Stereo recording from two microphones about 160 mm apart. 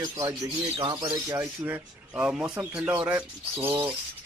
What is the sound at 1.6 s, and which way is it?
Speech, 10° right (ahead or behind).